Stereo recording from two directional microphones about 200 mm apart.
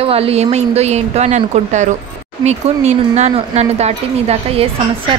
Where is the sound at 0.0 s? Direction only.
30° right (ahead or behind).